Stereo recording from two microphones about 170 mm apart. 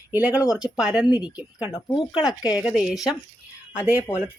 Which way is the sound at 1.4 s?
10° right (ahead or behind).